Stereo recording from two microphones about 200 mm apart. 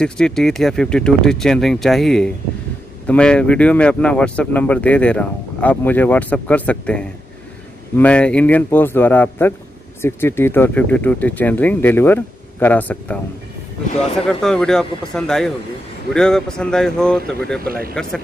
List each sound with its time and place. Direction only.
0.0 s speech: 5° left (ahead or behind)
14.4 s speech: 5° left (ahead or behind)
17.6 s speech: 45° right (ahead or behind)